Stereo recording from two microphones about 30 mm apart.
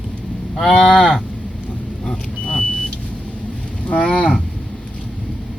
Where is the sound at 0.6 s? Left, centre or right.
Centre.